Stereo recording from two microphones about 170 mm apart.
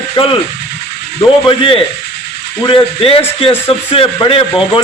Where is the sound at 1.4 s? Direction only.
30° left (ahead or behind).